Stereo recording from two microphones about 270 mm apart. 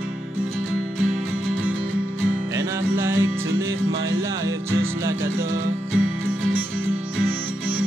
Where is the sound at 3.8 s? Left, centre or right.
Right.